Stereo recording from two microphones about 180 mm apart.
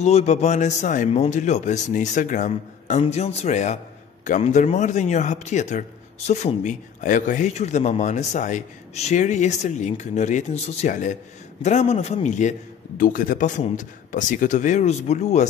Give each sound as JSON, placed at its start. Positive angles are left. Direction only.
{"t": 0.0, "sound": "speech", "side_deg": 35}